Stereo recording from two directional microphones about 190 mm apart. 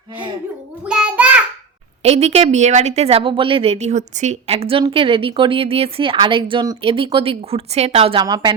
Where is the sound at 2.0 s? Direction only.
35° right (ahead or behind).